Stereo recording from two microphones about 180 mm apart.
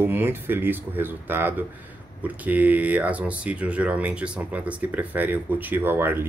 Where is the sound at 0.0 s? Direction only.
10° right (ahead or behind).